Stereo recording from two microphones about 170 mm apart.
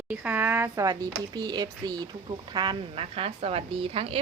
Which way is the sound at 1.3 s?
25° right (ahead or behind).